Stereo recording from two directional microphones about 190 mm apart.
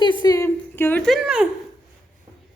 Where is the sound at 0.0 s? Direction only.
25° left (ahead or behind); by 1.5 s 5° right (ahead or behind).